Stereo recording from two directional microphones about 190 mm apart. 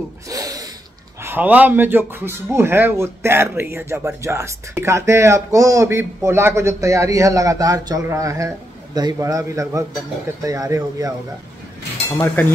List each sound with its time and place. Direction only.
0.3 s snort: 20° right (ahead or behind)
1.2 s a man's voice: 10° right (ahead or behind)